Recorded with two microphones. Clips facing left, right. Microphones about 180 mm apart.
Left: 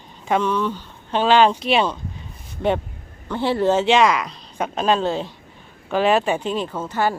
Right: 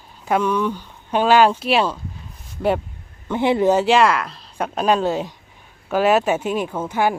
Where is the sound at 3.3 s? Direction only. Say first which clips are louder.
Right 2 dB; 15° right (ahead or behind).